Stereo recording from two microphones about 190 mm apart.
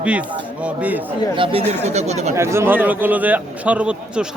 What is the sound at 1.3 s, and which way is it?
Speech, 30° right (ahead or behind).